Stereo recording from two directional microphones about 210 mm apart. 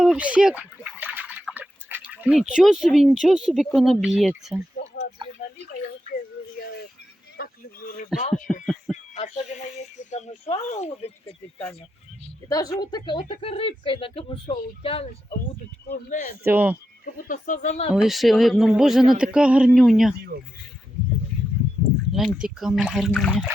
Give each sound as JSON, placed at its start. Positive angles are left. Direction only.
{"t": 0.0, "sound": "drip", "side_deg": -5}
{"t": 3.8, "sound": "speech", "side_deg": 0}
{"t": 5.2, "sound": "a sound", "side_deg": -25}
{"t": 7.4, "sound": "a sound", "side_deg": 45}
{"t": 8.1, "sound": "speech", "side_deg": -5}
{"t": 8.9, "sound": "a sound", "side_deg": 0}
{"t": 10.1, "sound": "speech", "side_deg": 30}
{"t": 12.5, "sound": "speech", "side_deg": 15}
{"t": 15.9, "sound": "speech", "side_deg": 40}
{"t": 16.4, "sound": "speech", "side_deg": -10}
{"t": 17.2, "sound": "speech", "side_deg": 40}
{"t": 17.9, "sound": "speech", "side_deg": 0}
{"t": 22.1, "sound": "speech", "side_deg": 0}